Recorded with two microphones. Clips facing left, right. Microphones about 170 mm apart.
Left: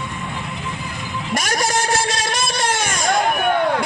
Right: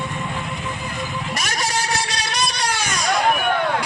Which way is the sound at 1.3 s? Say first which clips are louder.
Left 6 dB; 50° left (ahead or behind).